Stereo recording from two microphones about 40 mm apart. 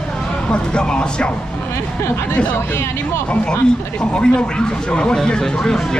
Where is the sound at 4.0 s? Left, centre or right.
Left.